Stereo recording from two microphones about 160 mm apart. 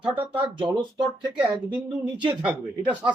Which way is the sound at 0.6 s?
30° right (ahead or behind).